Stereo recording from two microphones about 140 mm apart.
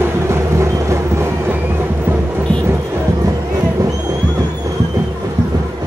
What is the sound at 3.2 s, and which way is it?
Music, 25° right (ahead or behind).